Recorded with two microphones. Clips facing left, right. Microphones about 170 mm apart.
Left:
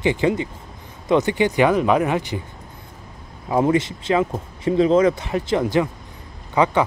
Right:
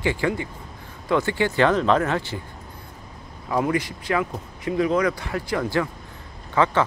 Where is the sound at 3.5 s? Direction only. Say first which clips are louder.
Left 5 dB; 25° left (ahead or behind).